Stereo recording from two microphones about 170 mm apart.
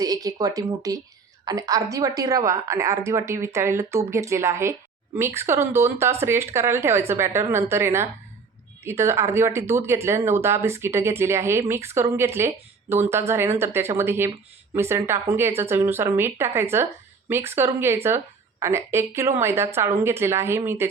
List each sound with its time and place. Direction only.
0.0 s speech: 20° right (ahead or behind)